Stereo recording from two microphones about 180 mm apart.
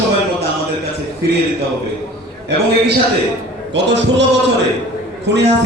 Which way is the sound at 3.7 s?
75° right (ahead or behind).